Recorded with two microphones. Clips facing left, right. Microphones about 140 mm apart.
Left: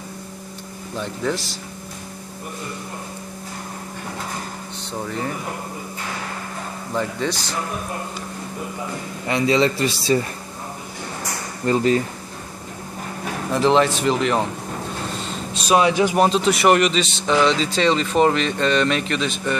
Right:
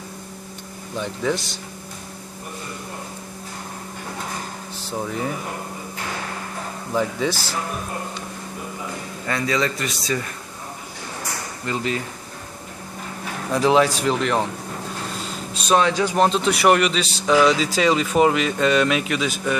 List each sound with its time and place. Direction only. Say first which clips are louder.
0.9 s speech: right 1 dB; centre (ahead or behind)
6.9 s speech: right 2 dB; 5° right (ahead or behind)
9.2 s a man's voice: left 5 dB; 25° left (ahead or behind)
11.6 s speech: left 8 dB; 35° left (ahead or behind)
13.5 s speech: even; 5° right (ahead or behind)
15.1 s a sound: left 2 dB; centre (ahead or behind)
15.8 s speech: left 3 dB; 15° left (ahead or behind)
16.3 s speech: left 1 dB; centre (ahead or behind)